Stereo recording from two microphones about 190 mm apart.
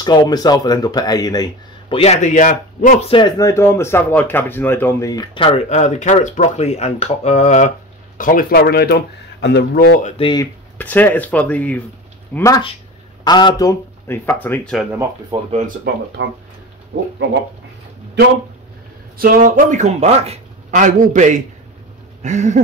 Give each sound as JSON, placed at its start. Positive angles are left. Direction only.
{"t": 0.0, "sound": "speech", "side_deg": 20}
{"t": 10.1, "sound": "speech", "side_deg": 25}
{"t": 10.8, "sound": "speech", "side_deg": 10}
{"t": 15.3, "sound": "speech", "side_deg": -25}
{"t": 15.9, "sound": "speech", "side_deg": -60}
{"t": 19.1, "sound": "speech", "side_deg": -50}